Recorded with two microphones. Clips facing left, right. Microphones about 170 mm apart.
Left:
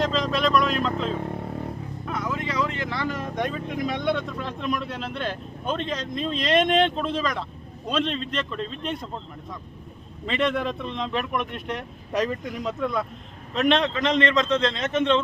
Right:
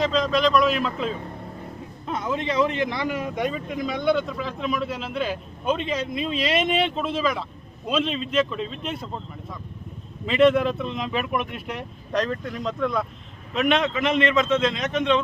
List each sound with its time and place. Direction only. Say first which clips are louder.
0.0 s speech: right 2 dB; centre (ahead or behind)
2.0 s speech: right 3 dB; 25° right (ahead or behind); by 9.0 s 5° right (ahead or behind)
10.2 s speech: right 7 dB; 5° right (ahead or behind)
12.1 s speech: even; 10° left (ahead or behind)